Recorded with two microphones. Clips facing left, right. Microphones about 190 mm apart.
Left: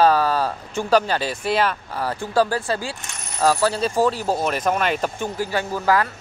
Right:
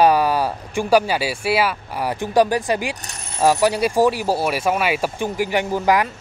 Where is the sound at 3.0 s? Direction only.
35° right (ahead or behind).